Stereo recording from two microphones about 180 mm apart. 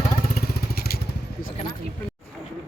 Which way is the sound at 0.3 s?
60° left (ahead or behind).